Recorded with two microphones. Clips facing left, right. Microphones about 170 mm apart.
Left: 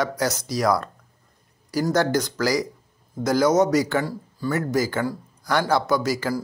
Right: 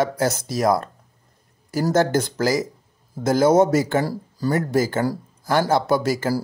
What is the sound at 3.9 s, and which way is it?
Speech, 35° right (ahead or behind).